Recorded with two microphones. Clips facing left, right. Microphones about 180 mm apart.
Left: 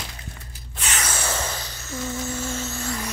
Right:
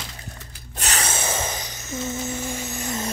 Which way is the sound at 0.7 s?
40° right (ahead or behind).